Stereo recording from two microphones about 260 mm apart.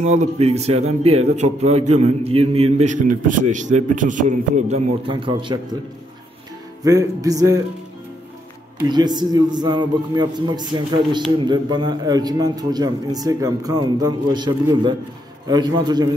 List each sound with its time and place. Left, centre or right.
0.0 s a man's voice: right
6.8 s a man's voice: centre
8.8 s a man's voice: centre